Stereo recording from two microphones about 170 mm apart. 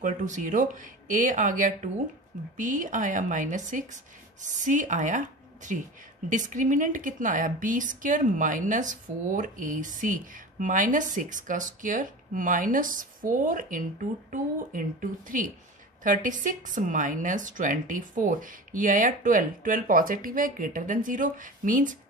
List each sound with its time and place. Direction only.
0.0 s a woman's voice: 50° right (ahead or behind)